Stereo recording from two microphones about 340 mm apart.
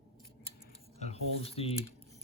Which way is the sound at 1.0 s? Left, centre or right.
Centre.